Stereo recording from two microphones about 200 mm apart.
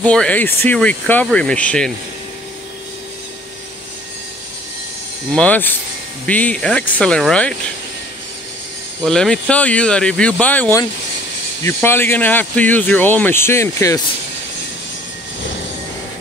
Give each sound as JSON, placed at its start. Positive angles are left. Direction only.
{"t": 0.0, "sound": "speech", "side_deg": 5}
{"t": 5.3, "sound": "speech", "side_deg": 5}
{"t": 9.0, "sound": "speech", "side_deg": 5}